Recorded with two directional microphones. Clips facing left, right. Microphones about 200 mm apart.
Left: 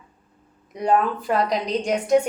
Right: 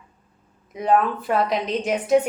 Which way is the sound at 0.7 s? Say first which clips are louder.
Right 1 dB; centre (ahead or behind).